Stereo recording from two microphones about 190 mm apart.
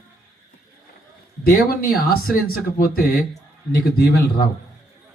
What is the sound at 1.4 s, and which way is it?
A man's voice, 55° left (ahead or behind).